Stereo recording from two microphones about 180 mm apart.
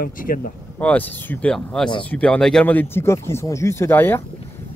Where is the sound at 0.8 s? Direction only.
10° left (ahead or behind).